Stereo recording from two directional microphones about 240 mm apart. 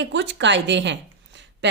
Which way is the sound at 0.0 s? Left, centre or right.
Right.